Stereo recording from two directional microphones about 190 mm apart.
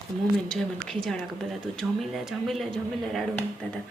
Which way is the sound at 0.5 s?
Centre (ahead or behind).